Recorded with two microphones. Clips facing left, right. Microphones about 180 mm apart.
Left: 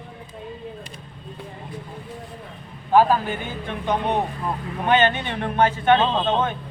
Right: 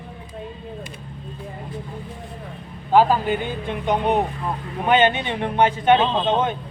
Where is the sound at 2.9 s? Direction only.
15° right (ahead or behind).